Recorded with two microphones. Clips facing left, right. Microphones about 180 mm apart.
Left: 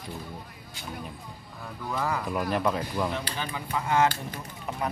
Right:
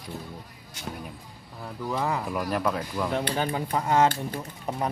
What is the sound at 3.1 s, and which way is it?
Speech, 55° right (ahead or behind).